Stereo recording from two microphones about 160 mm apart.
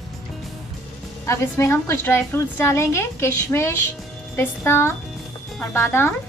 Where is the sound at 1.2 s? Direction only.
15° left (ahead or behind).